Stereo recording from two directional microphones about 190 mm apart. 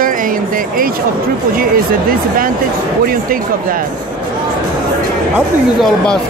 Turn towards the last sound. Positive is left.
turn(degrees=0)  # may be behind; listen again after turning